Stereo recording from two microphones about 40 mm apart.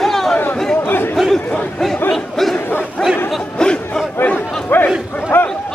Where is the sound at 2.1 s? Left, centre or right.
Centre.